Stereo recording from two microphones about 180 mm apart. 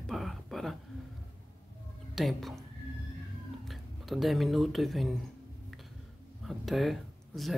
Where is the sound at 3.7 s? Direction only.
Centre (ahead or behind).